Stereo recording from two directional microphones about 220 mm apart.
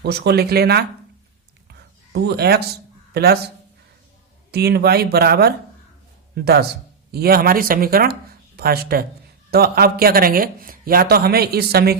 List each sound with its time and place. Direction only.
0.0 s speech: 50° right (ahead or behind)
2.1 s speech: 50° right (ahead or behind)
4.5 s speech: 45° right (ahead or behind)